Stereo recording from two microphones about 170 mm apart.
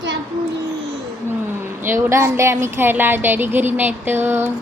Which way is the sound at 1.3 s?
15° right (ahead or behind).